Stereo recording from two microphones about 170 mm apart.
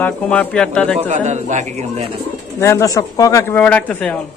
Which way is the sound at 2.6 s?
20° left (ahead or behind).